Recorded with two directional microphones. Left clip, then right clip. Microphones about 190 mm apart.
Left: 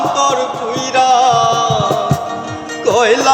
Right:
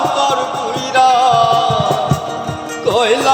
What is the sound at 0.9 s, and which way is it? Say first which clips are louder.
Music: even; 10° left (ahead or behind).